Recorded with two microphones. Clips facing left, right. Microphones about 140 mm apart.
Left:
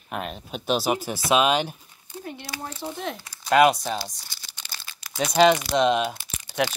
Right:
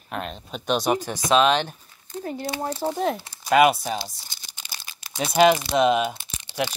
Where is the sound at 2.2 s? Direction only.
40° right (ahead or behind).